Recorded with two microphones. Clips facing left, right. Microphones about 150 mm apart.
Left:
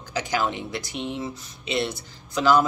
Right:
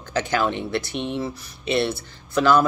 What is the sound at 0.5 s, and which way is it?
Speech, 60° right (ahead or behind).